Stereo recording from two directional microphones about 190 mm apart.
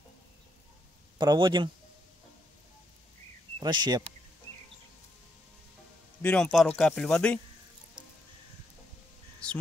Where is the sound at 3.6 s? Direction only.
20° right (ahead or behind).